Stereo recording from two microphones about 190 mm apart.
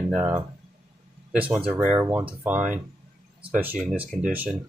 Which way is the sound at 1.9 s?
25° right (ahead or behind).